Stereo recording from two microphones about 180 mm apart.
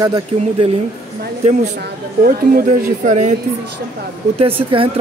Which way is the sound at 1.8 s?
55° right (ahead or behind).